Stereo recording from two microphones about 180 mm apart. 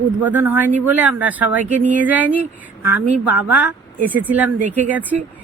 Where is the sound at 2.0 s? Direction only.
10° right (ahead or behind).